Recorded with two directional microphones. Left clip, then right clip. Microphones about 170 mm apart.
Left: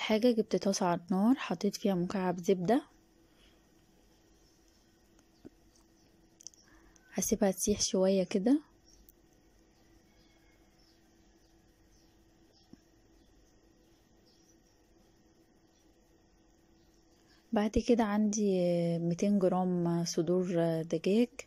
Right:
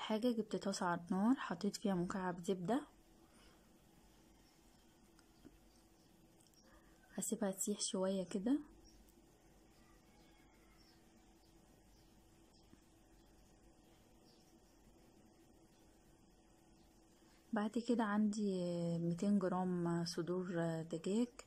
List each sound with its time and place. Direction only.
0.0 s a woman's voice: 15° left (ahead or behind)
7.2 s a woman's voice: 25° left (ahead or behind)
17.5 s a woman's voice: 20° left (ahead or behind)